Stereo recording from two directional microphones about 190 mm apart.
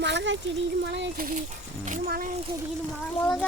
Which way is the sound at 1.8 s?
45° right (ahead or behind).